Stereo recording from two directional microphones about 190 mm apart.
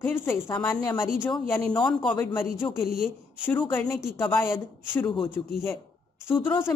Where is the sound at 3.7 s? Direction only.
15° left (ahead or behind).